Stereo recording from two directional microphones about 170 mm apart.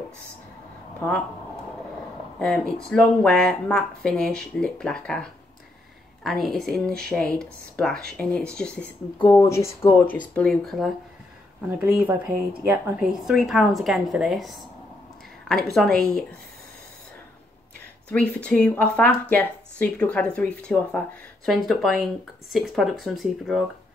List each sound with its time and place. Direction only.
2.3 s a woman's voice: 5° left (ahead or behind)
11.6 s a woman's voice: 10° right (ahead or behind)
18.4 s a woman's voice: 5° left (ahead or behind)